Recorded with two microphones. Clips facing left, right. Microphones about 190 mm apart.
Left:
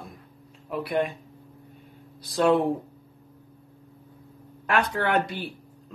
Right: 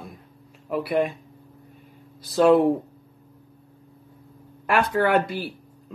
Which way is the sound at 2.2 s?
Centre (ahead or behind).